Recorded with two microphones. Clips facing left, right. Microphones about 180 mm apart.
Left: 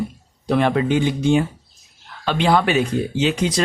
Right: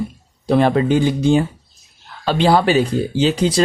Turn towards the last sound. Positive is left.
turn(degrees=-30)  # may be behind; listen again after turning